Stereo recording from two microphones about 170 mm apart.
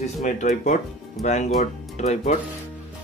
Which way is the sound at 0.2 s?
45° left (ahead or behind).